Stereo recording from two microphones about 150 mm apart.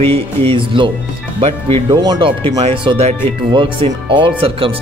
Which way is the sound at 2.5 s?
45° right (ahead or behind).